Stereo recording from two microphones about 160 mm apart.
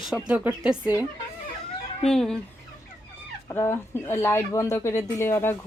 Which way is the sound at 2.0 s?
5° left (ahead or behind).